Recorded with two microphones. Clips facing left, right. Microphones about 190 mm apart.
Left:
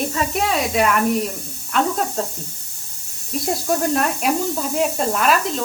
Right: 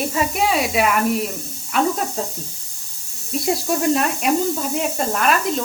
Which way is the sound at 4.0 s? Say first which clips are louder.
Right 1 dB; centre (ahead or behind).